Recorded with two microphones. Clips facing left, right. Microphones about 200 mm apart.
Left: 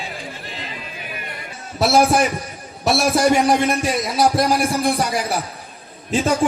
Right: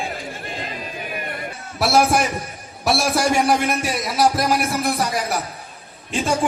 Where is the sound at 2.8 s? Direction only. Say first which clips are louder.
Left 3 dB; 25° left (ahead or behind).